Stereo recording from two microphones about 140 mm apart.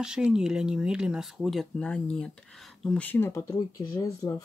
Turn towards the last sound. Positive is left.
turn(degrees=25)  # may be behind; listen again after turning